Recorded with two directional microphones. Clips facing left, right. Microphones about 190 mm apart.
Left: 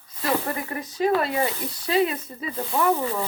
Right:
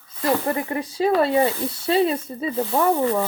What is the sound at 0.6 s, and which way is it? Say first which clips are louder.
Speech: even; 30° right (ahead or behind).